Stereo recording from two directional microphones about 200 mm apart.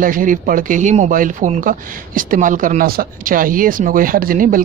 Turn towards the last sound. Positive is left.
turn(degrees=-45)  # may be behind; listen again after turning